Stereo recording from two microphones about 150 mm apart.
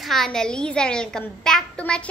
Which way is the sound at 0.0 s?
Centre (ahead or behind).